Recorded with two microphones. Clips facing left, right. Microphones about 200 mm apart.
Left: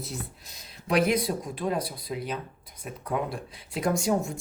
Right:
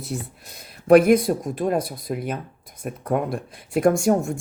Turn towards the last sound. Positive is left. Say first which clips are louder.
# right 7 dB
turn(degrees=-50)  # may be behind; listen again after turning